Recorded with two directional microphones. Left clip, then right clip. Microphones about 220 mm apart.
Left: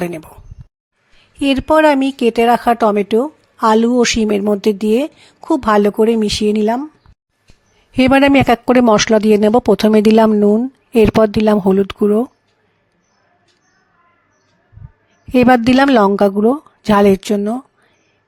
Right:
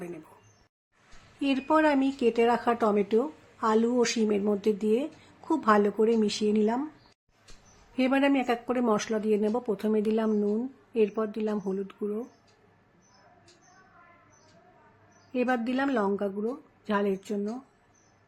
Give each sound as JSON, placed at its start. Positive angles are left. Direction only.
{"t": 1.4, "sound": "a woman's voice", "side_deg": 40}
{"t": 7.9, "sound": "speech", "side_deg": 50}
{"t": 15.3, "sound": "speech", "side_deg": 50}